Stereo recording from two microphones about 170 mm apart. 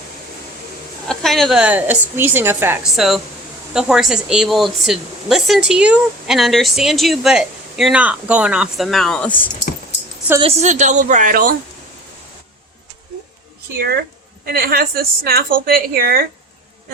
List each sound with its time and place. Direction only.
1.0 s a woman's voice: 5° left (ahead or behind); by 2.7 s 15° right (ahead or behind)
2.8 s speech: centre (ahead or behind)
10.4 s a woman's voice: 40° right (ahead or behind)
13.7 s a woman's voice: 70° right (ahead or behind)